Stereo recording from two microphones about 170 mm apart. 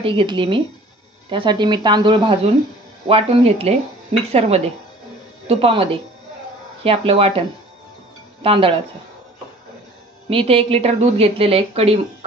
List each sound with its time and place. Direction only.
0.0 s a woman's voice: 30° right (ahead or behind)
10.3 s a woman's voice: 35° right (ahead or behind)